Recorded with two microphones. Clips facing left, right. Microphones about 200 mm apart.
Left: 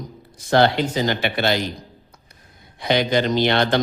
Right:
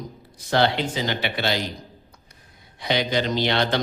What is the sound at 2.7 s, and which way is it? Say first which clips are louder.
A man's voice: left 4 dB; 50° left (ahead or behind).